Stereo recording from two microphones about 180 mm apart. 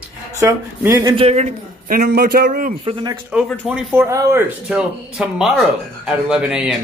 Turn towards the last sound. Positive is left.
turn(degrees=-5)  # may be behind; listen again after turning